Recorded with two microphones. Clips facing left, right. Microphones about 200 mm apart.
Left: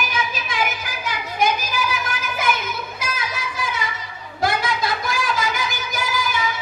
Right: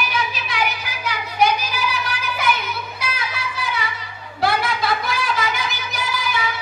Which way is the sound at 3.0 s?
45° left (ahead or behind).